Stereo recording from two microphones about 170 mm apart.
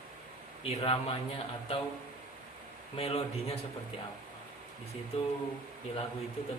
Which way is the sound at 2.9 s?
35° left (ahead or behind).